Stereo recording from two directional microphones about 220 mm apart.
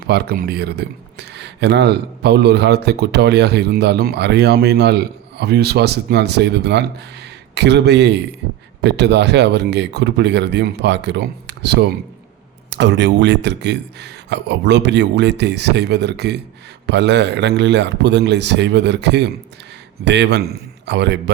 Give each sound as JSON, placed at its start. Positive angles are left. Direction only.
{"t": 0.1, "sound": "speech", "side_deg": -45}